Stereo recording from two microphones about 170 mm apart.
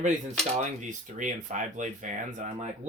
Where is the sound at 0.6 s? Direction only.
45° right (ahead or behind).